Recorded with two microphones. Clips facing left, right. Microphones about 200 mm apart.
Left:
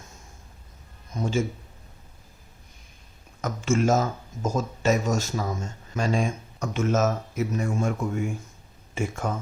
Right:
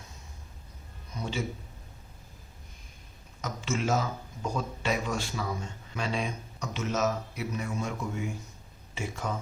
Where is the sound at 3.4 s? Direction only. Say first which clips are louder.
Left 8 dB; 50° left (ahead or behind).